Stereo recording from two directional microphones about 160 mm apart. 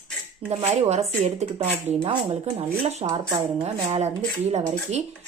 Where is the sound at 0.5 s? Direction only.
45° right (ahead or behind).